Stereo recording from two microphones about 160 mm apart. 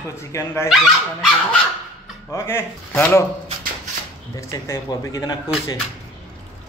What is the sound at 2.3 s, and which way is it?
Speech, 15° left (ahead or behind).